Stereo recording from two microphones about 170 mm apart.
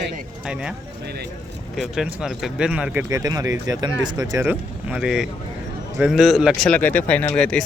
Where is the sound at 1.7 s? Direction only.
5° right (ahead or behind).